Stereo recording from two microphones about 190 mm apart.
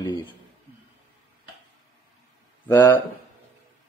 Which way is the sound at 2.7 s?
10° left (ahead or behind).